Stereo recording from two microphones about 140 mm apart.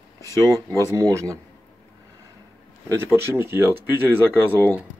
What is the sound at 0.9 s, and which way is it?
Speech, 20° right (ahead or behind).